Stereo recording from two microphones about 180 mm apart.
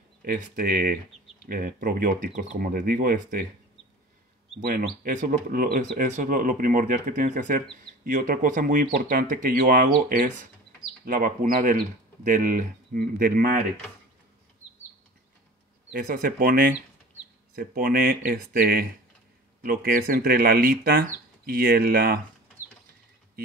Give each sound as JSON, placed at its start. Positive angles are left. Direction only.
{"t": 0.2, "sound": "speech", "side_deg": -50}
{"t": 4.6, "sound": "speech", "side_deg": -50}
{"t": 15.9, "sound": "speech", "side_deg": -50}